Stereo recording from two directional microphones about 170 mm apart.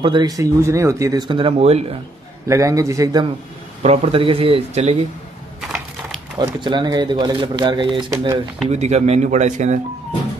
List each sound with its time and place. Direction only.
0.0 s speech: 25° right (ahead or behind)
2.4 s speech: 15° right (ahead or behind)
3.8 s speech: 35° right (ahead or behind)
6.3 s speech: 25° right (ahead or behind)
8.6 s speech: 40° right (ahead or behind)